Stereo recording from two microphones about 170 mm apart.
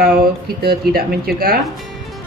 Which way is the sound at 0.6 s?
65° right (ahead or behind).